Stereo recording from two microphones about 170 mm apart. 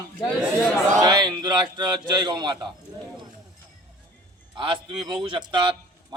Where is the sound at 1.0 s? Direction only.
25° right (ahead or behind).